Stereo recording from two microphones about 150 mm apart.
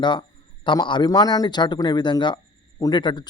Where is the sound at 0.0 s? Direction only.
30° left (ahead or behind).